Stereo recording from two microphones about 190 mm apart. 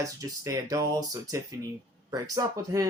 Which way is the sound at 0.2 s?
15° right (ahead or behind).